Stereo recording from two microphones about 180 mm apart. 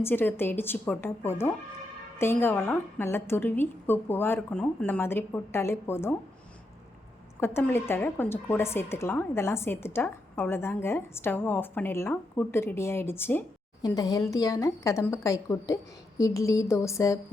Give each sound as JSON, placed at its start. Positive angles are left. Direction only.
{"t": 0.0, "sound": "a woman's voice", "side_deg": 10}
{"t": 7.3, "sound": "a woman's voice", "side_deg": 15}